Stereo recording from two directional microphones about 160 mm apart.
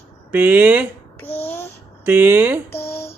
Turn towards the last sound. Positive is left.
turn(degrees=15)  # may be behind; listen again after turning